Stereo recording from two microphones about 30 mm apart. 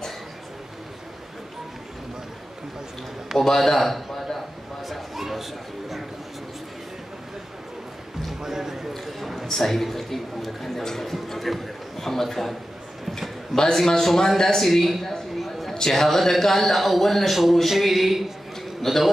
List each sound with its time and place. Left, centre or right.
3.3 s a man's voice: centre
4.8 s a sound: centre
8.4 s a sound: centre
9.5 s a man's voice: centre
10.8 s a man's voice: centre
11.1 s a man's voice: centre
13.6 s a man's voice: centre
14.6 s a sound: centre
15.9 s a man's voice: centre